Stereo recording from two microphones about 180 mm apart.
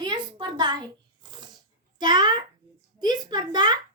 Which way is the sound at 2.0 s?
25° right (ahead or behind).